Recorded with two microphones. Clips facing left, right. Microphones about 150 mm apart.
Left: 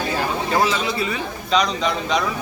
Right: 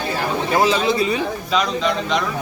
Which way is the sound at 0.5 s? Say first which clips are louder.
Right 4 dB; 20° right (ahead or behind).